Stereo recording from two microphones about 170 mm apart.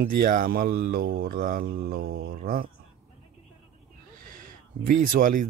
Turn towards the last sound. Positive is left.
turn(degrees=-50)  # may be behind; listen again after turning